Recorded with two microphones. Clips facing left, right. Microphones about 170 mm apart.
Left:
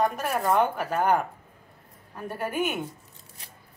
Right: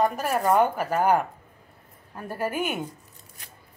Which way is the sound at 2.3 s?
5° right (ahead or behind).